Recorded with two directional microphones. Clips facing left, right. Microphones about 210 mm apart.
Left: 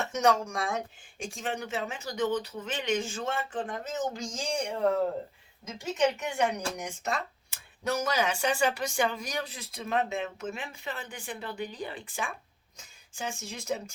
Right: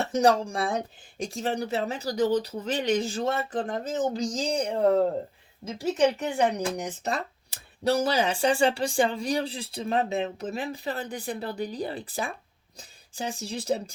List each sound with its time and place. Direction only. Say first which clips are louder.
0.0 s speech: right 4 dB; 35° right (ahead or behind)